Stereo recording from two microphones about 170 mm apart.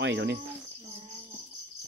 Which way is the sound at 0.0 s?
90° right.